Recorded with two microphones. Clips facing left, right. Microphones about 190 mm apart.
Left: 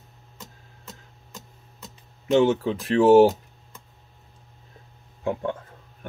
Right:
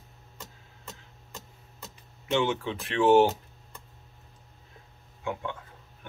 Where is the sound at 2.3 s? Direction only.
40° left (ahead or behind).